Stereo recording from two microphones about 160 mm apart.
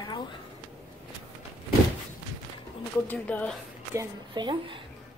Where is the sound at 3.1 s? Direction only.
10° left (ahead or behind).